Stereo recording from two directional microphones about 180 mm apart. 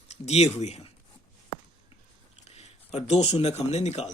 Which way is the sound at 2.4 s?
40° left (ahead or behind).